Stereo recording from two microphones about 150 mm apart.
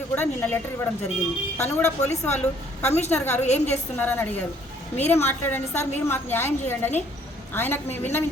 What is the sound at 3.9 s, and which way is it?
A woman's voice, 10° left (ahead or behind).